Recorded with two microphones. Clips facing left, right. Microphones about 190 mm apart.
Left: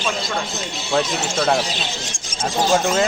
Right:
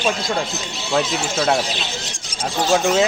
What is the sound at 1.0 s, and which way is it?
Speech, centre (ahead or behind).